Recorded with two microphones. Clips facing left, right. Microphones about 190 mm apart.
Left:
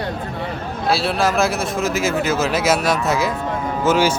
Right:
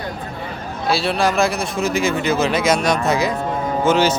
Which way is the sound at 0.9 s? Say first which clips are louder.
Even; centre (ahead or behind).